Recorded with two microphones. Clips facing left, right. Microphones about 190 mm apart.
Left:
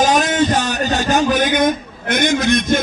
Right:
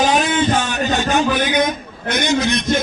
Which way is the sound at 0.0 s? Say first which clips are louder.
Left 1 dB; 45° left (ahead or behind).